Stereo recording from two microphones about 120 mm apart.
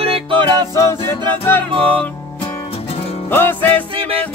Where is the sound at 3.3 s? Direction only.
15° left (ahead or behind).